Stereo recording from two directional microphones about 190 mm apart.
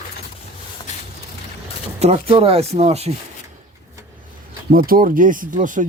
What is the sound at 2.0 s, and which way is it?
Speech, 35° right (ahead or behind).